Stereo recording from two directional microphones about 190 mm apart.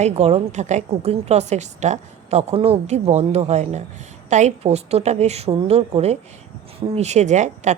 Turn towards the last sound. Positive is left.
turn(degrees=-40)  # may be behind; listen again after turning